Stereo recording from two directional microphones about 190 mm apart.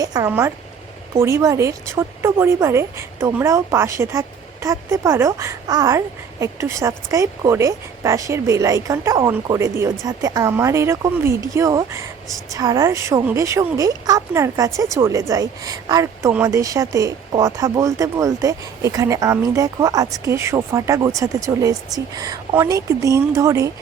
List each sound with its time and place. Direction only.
0.0 s speech: 20° right (ahead or behind)